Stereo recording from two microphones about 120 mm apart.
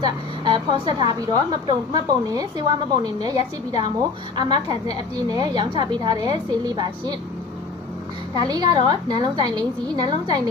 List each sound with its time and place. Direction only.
0.0 s a woman's voice: 40° right (ahead or behind)
8.4 s a woman's voice: 35° right (ahead or behind)